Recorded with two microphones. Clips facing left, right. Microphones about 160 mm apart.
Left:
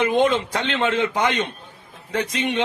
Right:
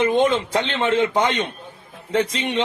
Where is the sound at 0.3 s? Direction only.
25° right (ahead or behind).